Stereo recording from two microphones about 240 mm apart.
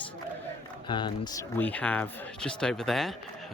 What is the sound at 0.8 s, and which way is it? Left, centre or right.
Speech, centre.